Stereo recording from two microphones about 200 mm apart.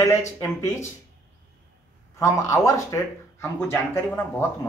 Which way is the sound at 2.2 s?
15° left (ahead or behind).